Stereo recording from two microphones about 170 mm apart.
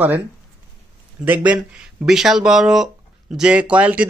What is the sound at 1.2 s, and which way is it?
A man's voice, 10° right (ahead or behind).